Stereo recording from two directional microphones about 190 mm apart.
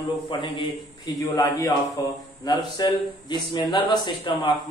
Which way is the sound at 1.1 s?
15° left (ahead or behind).